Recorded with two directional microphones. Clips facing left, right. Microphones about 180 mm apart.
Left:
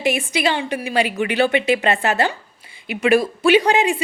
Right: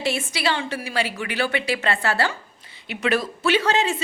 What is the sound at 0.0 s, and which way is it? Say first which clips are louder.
A woman's voice: left 5 dB; 15° left (ahead or behind).